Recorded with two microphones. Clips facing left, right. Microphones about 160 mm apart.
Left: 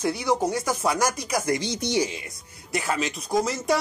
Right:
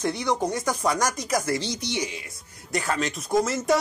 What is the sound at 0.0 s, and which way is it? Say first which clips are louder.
Speech: left 1 dB; 5° left (ahead or behind).